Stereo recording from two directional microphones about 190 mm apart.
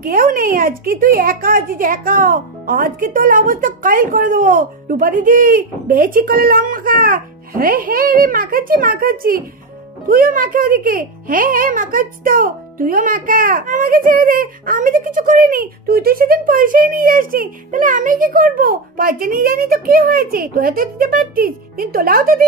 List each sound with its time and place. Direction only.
0.0 s a child's voice: 45° right (ahead or behind)